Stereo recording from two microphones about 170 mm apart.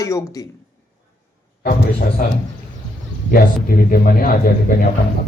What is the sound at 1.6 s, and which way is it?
A man's voice, 60° left (ahead or behind).